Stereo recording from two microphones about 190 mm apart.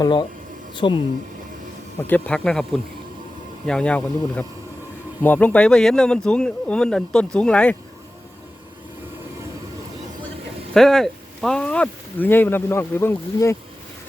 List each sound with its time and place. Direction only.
0.0 s speech: 25° left (ahead or behind)
2.0 s speech: 10° left (ahead or behind)
10.8 s speech: centre (ahead or behind)